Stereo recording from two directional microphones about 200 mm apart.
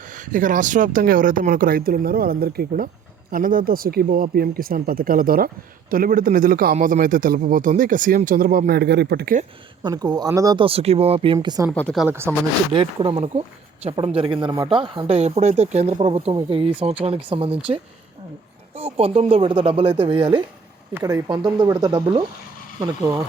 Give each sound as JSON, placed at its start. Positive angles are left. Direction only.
{"t": 0.1, "sound": "a man's voice", "side_deg": -40}
{"t": 9.8, "sound": "speech", "side_deg": -20}
{"t": 11.3, "sound": "speech", "side_deg": -15}
{"t": 11.7, "sound": "speech", "side_deg": 5}
{"t": 12.0, "sound": "speech", "side_deg": -10}
{"t": 12.7, "sound": "speech", "side_deg": -25}
{"t": 20.9, "sound": "speech", "side_deg": -15}